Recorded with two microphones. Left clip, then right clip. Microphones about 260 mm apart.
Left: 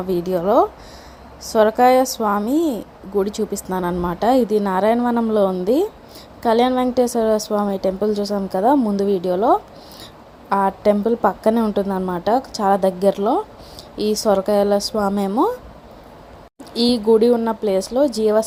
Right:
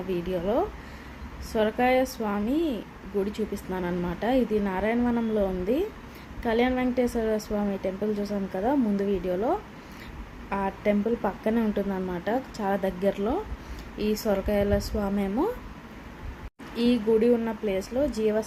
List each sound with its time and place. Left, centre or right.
0.1 s a woman's voice: left
16.7 s a woman's voice: left